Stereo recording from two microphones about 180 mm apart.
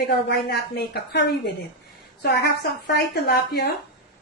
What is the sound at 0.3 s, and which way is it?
Speech, 65° left (ahead or behind).